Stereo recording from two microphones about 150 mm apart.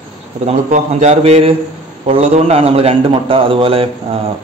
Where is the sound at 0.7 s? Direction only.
45° right (ahead or behind).